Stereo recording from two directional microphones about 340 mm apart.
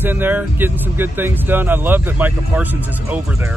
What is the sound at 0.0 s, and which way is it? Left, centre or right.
Speech, centre.